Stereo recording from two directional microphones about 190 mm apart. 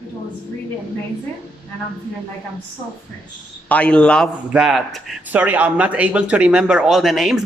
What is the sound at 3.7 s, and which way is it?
Speech, 5° left (ahead or behind).